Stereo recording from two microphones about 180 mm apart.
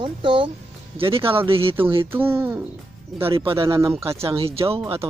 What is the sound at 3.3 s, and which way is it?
Speech, 30° right (ahead or behind).